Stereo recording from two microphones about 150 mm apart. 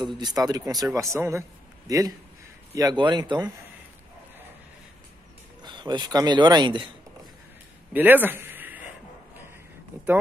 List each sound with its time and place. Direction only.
0.0 s speech: 25° right (ahead or behind)
5.6 s a man's voice: 30° right (ahead or behind)
7.9 s a sound: 10° right (ahead or behind)